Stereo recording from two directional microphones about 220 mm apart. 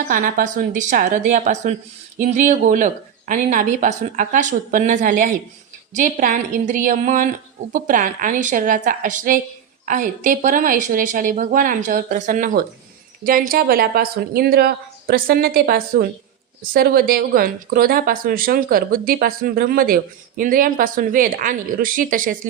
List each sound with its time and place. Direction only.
0.1 s speech: 40° right (ahead or behind)